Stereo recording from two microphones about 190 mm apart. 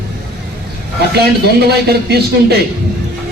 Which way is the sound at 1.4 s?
60° right (ahead or behind).